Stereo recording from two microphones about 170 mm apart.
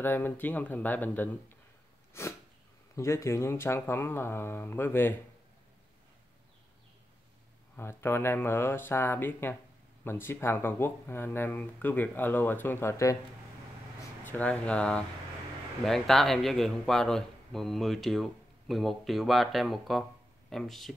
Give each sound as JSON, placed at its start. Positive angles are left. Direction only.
{"t": 0.0, "sound": "speech", "side_deg": 10}
{"t": 7.7, "sound": "speech", "side_deg": 15}
{"t": 14.2, "sound": "a man's voice", "side_deg": 10}